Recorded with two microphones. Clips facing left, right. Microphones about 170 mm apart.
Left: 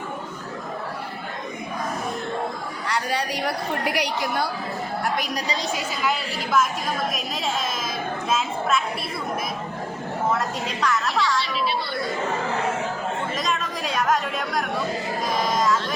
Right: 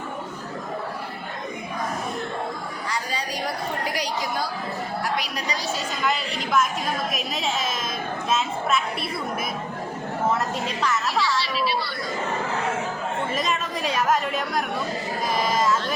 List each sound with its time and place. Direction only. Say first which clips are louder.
2.8 s chatter: left 5 dB; 65° left (ahead or behind)
5.7 s a woman's voice: right 2 dB; 5° left (ahead or behind)
10.3 s speech: even; centre (ahead or behind)
13.3 s chatter: right 1 dB; 5° right (ahead or behind)